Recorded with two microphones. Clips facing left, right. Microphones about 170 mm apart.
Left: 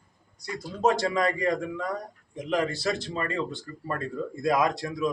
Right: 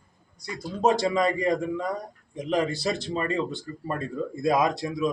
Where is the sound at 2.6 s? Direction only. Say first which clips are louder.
Right 1 dB; 15° right (ahead or behind).